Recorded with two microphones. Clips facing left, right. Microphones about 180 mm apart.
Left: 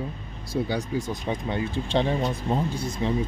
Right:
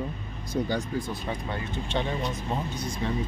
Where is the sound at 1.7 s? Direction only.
30° left (ahead or behind).